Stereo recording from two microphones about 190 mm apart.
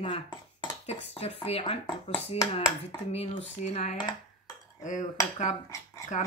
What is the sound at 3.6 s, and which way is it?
Speech, 35° left (ahead or behind).